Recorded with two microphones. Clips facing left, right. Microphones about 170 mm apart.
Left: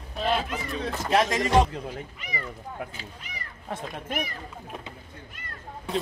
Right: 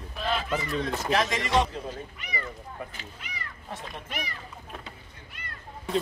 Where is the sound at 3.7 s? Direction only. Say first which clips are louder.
Left 6 dB; 50° left (ahead or behind).